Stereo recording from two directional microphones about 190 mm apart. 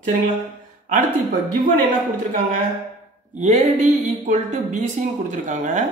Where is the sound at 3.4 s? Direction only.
40° right (ahead or behind).